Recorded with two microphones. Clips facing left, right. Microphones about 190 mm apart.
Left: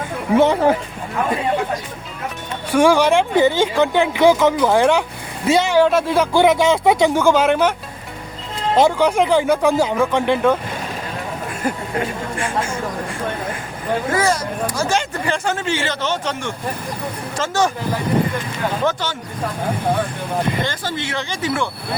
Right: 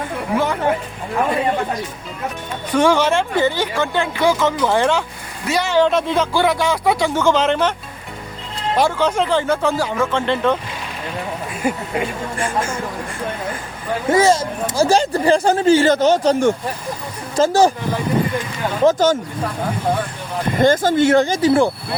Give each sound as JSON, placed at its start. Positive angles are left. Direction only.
{"t": 0.3, "sound": "speech", "side_deg": 25}
{"t": 2.7, "sound": "speech", "side_deg": 10}
{"t": 5.5, "sound": "speech", "side_deg": 25}
{"t": 5.7, "sound": "speech", "side_deg": 5}
{"t": 6.3, "sound": "speech", "side_deg": 20}
{"t": 8.7, "sound": "speech", "side_deg": 15}
{"t": 11.6, "sound": "speech", "side_deg": -10}
{"t": 14.1, "sound": "speech", "side_deg": -25}
{"t": 18.9, "sound": "speech", "side_deg": -45}
{"t": 20.6, "sound": "speech", "side_deg": -45}